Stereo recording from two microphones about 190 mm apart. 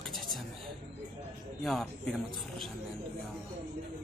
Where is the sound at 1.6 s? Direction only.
Centre (ahead or behind).